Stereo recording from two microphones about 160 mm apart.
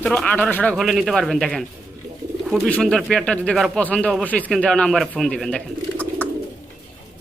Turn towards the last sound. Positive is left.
turn(degrees=10)  # may be behind; listen again after turning